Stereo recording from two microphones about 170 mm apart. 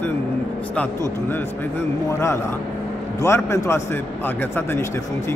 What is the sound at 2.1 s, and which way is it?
Speech, 15° left (ahead or behind).